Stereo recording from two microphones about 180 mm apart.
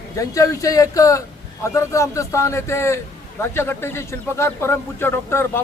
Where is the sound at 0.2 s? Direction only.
20° left (ahead or behind).